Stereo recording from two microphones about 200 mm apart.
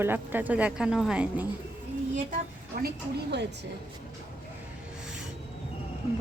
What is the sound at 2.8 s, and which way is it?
Speech, 55° right (ahead or behind).